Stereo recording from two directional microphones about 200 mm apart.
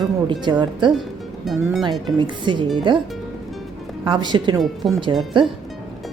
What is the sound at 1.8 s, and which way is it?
A woman's voice, 25° right (ahead or behind).